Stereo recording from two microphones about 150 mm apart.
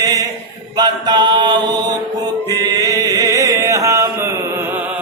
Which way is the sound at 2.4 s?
25° right (ahead or behind).